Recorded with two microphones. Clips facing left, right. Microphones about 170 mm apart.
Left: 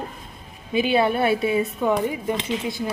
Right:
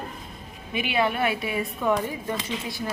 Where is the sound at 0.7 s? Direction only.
35° left (ahead or behind).